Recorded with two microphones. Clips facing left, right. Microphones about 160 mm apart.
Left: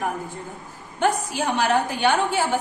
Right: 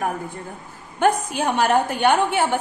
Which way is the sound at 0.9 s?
55° right (ahead or behind).